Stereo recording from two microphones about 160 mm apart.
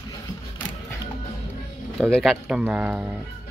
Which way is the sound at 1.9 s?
5° left (ahead or behind).